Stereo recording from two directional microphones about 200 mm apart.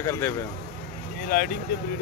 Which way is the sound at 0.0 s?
15° left (ahead or behind).